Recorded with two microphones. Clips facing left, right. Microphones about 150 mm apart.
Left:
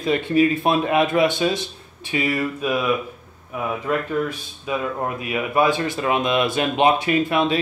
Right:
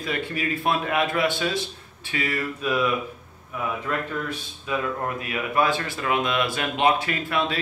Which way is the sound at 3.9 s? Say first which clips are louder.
Left 6 dB; 15° left (ahead or behind).